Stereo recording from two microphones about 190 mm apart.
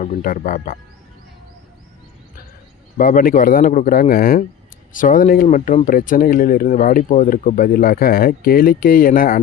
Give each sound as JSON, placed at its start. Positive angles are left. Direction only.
{"t": 0.0, "sound": "speech", "side_deg": 45}
{"t": 3.0, "sound": "speech", "side_deg": 45}